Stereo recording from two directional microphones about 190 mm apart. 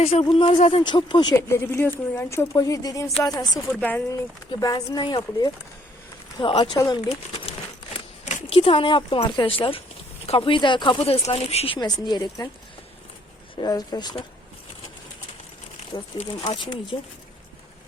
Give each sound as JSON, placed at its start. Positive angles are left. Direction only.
{"t": 0.0, "sound": "speech", "side_deg": 30}
{"t": 3.8, "sound": "speech", "side_deg": 10}
{"t": 4.6, "sound": "speech", "side_deg": 20}
{"t": 13.6, "sound": "speech", "side_deg": 20}
{"t": 16.1, "sound": "speech", "side_deg": 25}